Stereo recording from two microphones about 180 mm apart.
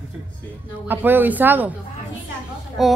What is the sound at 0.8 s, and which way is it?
Speech, 10° right (ahead or behind).